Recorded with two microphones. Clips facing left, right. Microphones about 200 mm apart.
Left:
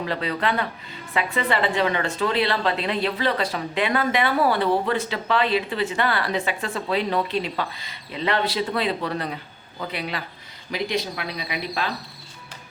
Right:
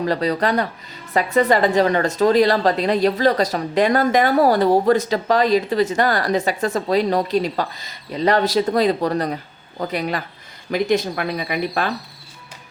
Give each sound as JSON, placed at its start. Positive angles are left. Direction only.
{"t": 0.0, "sound": "a woman's voice", "side_deg": -40}